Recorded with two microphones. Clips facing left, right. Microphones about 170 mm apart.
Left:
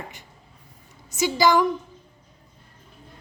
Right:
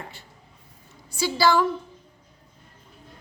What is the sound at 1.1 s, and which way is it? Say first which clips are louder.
Speech: left 2 dB; 20° left (ahead or behind).